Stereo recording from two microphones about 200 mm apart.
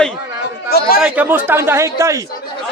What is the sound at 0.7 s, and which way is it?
Speech, 50° left (ahead or behind).